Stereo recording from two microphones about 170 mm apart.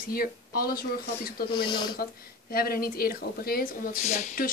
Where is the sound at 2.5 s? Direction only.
60° left (ahead or behind).